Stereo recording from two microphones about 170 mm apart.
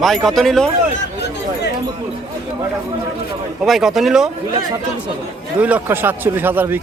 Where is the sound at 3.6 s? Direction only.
Centre (ahead or behind).